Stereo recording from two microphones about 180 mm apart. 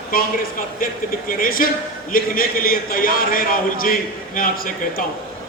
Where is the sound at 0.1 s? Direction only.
55° left (ahead or behind).